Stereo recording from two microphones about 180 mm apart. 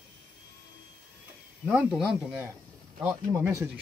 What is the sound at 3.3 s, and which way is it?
Speech, 15° right (ahead or behind).